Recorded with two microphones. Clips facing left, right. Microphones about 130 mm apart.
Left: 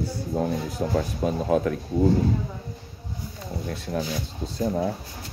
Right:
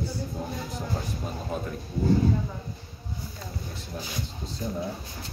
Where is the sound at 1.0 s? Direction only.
85° left.